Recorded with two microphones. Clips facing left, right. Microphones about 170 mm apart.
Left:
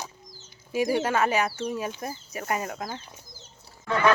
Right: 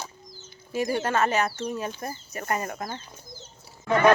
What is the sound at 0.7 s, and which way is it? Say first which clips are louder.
Speech: left 1 dB; 10° left (ahead or behind).